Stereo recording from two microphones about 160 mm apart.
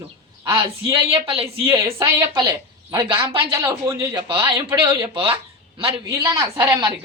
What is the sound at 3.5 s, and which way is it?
Speech, 15° right (ahead or behind).